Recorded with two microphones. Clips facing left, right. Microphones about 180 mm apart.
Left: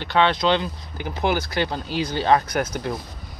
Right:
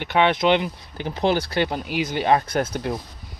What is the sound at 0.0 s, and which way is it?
Speech, 20° right (ahead or behind).